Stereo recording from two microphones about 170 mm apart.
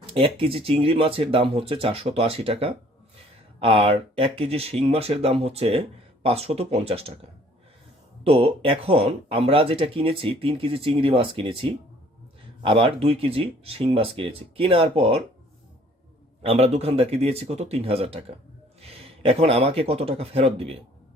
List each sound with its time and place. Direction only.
0.0 s speech: 35° right (ahead or behind)
8.3 s speech: 35° right (ahead or behind)
16.4 s speech: 35° right (ahead or behind)